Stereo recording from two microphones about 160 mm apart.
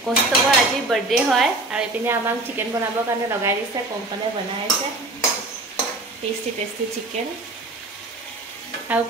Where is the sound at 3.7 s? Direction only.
20° right (ahead or behind).